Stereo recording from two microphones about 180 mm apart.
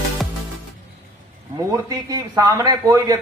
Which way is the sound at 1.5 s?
20° right (ahead or behind).